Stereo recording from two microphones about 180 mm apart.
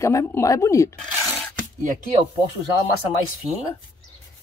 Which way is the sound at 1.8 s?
45° right (ahead or behind).